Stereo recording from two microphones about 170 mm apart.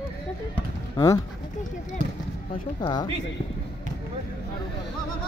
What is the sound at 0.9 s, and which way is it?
Speech, 20° left (ahead or behind).